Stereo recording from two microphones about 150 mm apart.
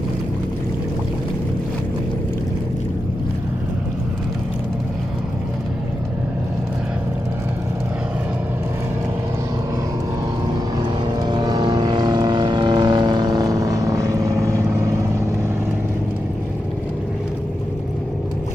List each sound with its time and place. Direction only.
10.8 s vehicle: 30° right (ahead or behind)